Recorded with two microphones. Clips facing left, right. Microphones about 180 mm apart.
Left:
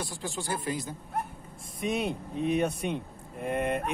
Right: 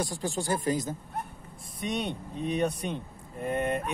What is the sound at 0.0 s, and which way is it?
Speech, 45° right (ahead or behind).